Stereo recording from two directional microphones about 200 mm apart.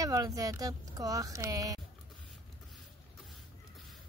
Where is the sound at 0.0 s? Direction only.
15° right (ahead or behind).